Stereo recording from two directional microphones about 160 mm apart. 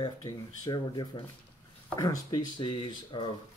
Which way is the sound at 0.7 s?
25° left (ahead or behind).